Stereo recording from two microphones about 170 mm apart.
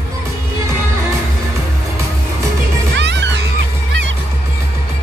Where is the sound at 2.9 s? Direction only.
90° right.